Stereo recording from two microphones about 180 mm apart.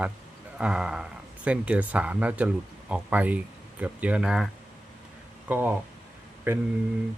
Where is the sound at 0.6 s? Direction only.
5° right (ahead or behind).